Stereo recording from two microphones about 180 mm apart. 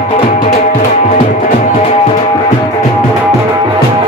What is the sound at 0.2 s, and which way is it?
Music, 30° left (ahead or behind).